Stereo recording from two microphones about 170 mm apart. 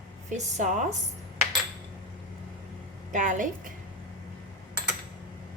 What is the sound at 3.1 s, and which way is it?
Speech, 50° right (ahead or behind).